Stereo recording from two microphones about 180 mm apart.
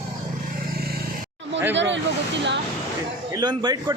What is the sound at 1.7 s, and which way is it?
Speech, 85° right.